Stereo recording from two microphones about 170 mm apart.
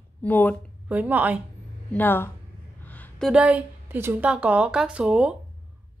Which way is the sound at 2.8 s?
10° left (ahead or behind).